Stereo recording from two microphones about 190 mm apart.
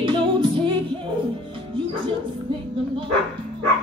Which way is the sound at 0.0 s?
25° right (ahead or behind).